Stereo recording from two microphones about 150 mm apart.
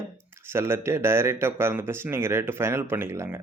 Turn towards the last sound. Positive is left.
turn(degrees=-15)  # may be behind; listen again after turning